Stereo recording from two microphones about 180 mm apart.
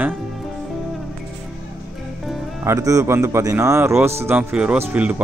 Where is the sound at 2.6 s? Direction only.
15° right (ahead or behind).